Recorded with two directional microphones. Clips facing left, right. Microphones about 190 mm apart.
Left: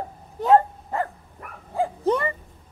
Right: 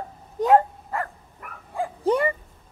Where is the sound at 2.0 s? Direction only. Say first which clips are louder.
Right 3 dB; 10° right (ahead or behind).